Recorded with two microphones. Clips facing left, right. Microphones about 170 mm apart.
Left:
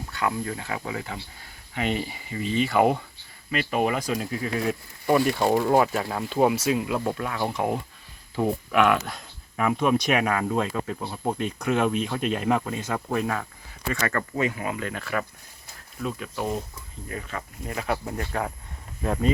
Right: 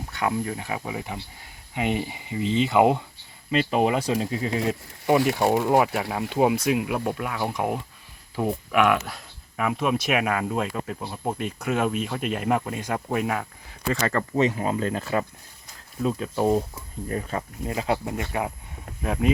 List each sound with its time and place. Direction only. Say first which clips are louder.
0.1 s speech: right 2 dB; 20° right (ahead or behind)
5.3 s speech: even; 10° right (ahead or behind); by 17.4 s 35° right (ahead or behind)
17.7 s speech: right 2 dB; 25° right (ahead or behind); by 19.3 s 5° right (ahead or behind)